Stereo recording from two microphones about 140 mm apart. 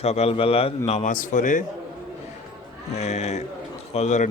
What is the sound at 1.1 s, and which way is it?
Speech, 65° left (ahead or behind).